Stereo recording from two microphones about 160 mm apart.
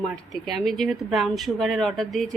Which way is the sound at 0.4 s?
Centre (ahead or behind).